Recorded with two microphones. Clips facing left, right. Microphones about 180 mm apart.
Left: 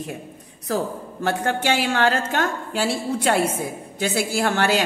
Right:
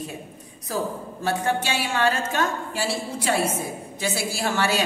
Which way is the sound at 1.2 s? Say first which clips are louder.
Left 2 dB; 60° left (ahead or behind).